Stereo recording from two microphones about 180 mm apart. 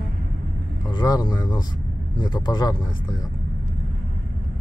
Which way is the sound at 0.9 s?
25° left (ahead or behind).